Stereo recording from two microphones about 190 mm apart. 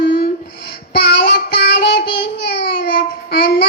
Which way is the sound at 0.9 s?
60° left (ahead or behind).